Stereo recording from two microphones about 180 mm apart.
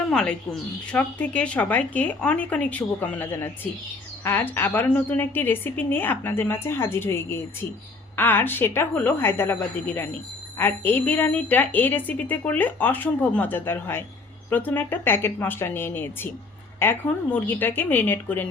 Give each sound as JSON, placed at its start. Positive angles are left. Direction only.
{"t": 0.1, "sound": "speech", "side_deg": 5}